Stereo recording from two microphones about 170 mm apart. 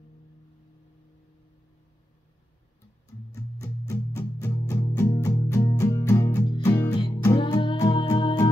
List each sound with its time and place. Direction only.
3.5 s music: 15° left (ahead or behind)